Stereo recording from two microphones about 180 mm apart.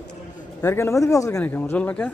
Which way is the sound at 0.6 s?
15° left (ahead or behind).